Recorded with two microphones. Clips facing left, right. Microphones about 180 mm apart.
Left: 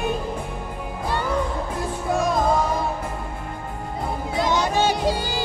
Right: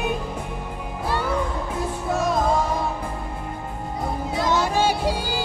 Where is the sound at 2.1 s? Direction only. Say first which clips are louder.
Left 1 dB; centre (ahead or behind).